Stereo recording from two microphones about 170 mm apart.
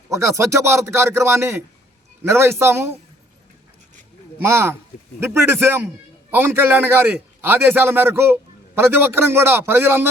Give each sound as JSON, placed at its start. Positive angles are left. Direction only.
{"t": 0.1, "sound": "a man's voice", "side_deg": -15}
{"t": 4.4, "sound": "a man's voice", "side_deg": -15}